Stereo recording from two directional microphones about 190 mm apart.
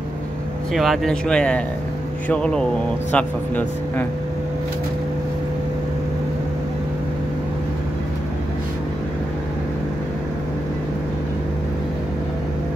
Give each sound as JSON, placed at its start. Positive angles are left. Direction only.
{"t": 0.7, "sound": "speech", "side_deg": 0}